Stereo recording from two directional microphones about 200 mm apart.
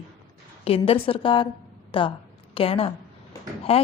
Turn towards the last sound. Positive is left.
turn(degrees=30)  # may be behind; listen again after turning